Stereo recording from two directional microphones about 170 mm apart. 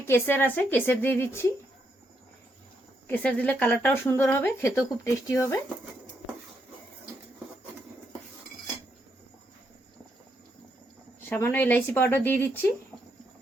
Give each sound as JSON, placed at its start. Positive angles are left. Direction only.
{"t": 0.0, "sound": "speech", "side_deg": 10}
{"t": 3.1, "sound": "speech", "side_deg": 10}
{"t": 11.3, "sound": "speech", "side_deg": 15}